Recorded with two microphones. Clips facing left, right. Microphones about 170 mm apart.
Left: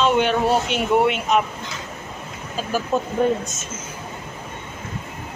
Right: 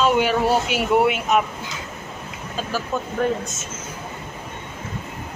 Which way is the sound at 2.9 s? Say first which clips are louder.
Left 5 dB; 25° left (ahead or behind).